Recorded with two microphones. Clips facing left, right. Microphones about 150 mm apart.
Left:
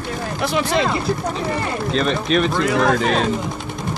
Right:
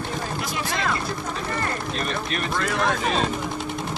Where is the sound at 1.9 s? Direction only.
90° left.